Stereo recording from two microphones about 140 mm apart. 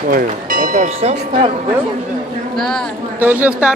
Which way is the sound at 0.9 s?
50° right (ahead or behind).